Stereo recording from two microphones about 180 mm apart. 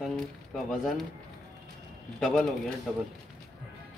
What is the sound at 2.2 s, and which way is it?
Speech, 5° left (ahead or behind).